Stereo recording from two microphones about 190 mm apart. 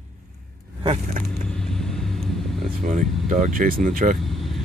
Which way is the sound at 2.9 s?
40° right (ahead or behind).